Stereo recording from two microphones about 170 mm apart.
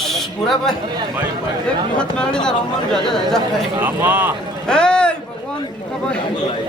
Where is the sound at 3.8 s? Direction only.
10° right (ahead or behind).